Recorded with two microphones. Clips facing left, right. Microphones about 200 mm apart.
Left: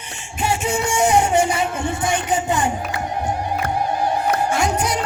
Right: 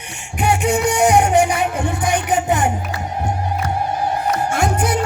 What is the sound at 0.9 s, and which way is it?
Music, 65° right (ahead or behind).